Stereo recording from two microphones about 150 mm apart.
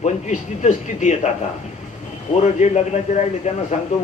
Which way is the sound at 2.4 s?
50° left (ahead or behind).